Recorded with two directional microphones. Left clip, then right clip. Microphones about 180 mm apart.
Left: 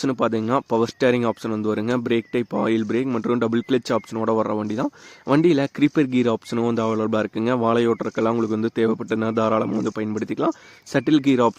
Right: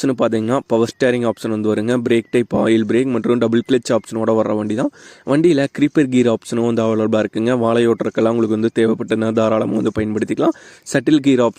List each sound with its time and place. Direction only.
0.0 s speech: 30° right (ahead or behind)